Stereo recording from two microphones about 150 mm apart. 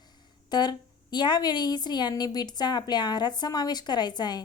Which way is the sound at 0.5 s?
30° left (ahead or behind).